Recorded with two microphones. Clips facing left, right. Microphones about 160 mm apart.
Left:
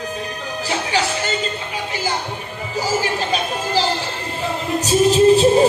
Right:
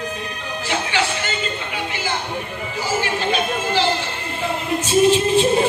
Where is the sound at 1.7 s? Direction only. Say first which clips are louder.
Left 1 dB; 40° left (ahead or behind).